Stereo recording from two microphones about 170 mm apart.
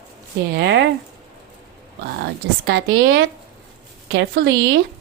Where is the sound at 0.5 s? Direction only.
80° right.